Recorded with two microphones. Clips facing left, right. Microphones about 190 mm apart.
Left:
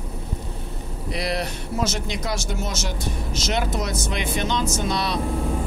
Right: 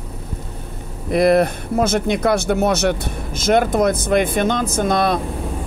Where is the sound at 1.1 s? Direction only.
50° right (ahead or behind).